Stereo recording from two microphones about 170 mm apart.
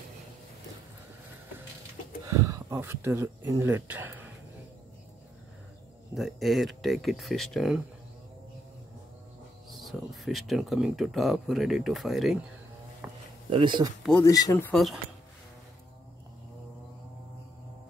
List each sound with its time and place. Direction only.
2.2 s speech: 20° right (ahead or behind)
6.1 s speech: centre (ahead or behind)
9.7 s speech: centre (ahead or behind)
13.0 s a sound: 10° right (ahead or behind)
13.5 s speech: 30° right (ahead or behind)
14.2 s speech: 20° left (ahead or behind)
14.7 s speech: centre (ahead or behind)